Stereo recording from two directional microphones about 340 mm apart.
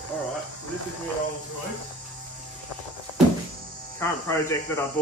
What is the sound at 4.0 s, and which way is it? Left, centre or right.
Speech, centre.